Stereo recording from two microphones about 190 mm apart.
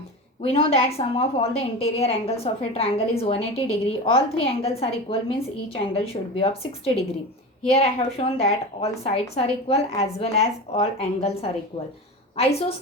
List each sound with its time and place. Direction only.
0.4 s a woman's voice: 30° left (ahead or behind)
7.7 s a woman's voice: 35° left (ahead or behind)